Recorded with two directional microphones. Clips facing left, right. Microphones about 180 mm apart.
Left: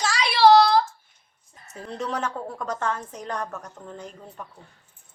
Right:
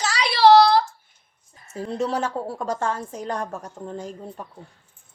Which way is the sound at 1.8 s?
30° right (ahead or behind).